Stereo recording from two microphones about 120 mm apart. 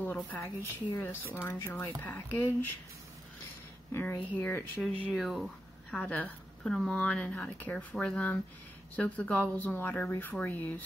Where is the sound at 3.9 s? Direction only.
15° left (ahead or behind).